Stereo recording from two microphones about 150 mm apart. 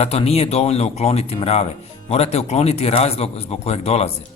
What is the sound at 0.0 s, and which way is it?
Speech, 40° left (ahead or behind).